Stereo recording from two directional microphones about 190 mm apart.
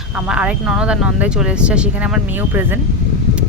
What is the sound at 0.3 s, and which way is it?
Speech, 5° right (ahead or behind).